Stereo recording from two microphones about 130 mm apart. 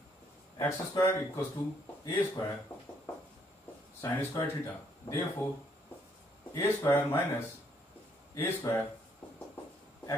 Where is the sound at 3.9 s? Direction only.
20° left (ahead or behind).